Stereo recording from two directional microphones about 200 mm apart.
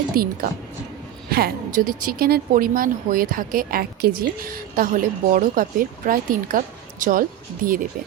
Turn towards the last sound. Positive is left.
turn(degrees=-45)  # may be behind; listen again after turning